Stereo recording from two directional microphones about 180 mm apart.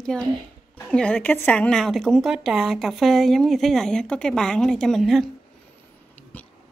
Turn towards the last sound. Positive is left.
turn(degrees=10)  # may be behind; listen again after turning